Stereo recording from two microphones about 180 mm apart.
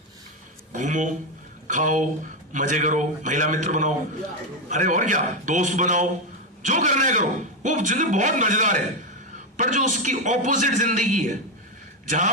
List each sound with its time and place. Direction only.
0.7 s a man's voice: 40° right (ahead or behind)